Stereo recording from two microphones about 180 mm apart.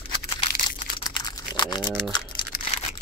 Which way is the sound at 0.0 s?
30° left (ahead or behind).